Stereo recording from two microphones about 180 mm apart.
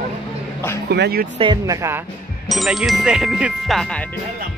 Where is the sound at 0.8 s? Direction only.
65° right (ahead or behind).